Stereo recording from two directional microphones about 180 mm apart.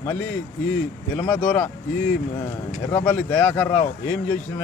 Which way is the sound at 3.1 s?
10° left (ahead or behind).